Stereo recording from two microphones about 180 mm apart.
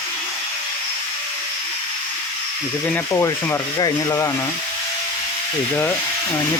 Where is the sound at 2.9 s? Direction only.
15° left (ahead or behind).